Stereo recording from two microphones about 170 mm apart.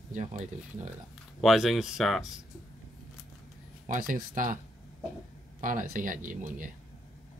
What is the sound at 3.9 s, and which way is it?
Speech, 50° right (ahead or behind).